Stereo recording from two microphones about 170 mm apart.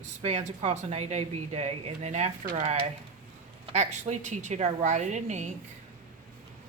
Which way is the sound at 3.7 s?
40° right (ahead or behind).